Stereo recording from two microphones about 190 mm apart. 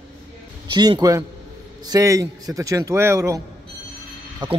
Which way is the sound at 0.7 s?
20° right (ahead or behind).